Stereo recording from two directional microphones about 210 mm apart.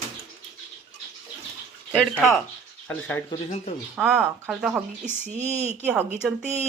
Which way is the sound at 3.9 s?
5° right (ahead or behind).